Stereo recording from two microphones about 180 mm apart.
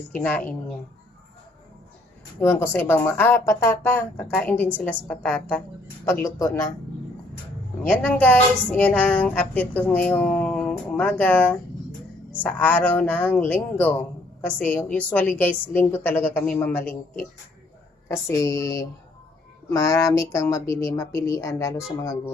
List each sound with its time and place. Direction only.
0.2 s a woman's voice: 10° left (ahead or behind)
2.4 s a woman's voice: 15° left (ahead or behind)
7.9 s a woman's voice: 10° left (ahead or behind)
18.1 s a woman's voice: 15° left (ahead or behind)